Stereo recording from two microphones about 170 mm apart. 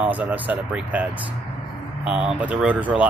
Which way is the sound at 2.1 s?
10° right (ahead or behind).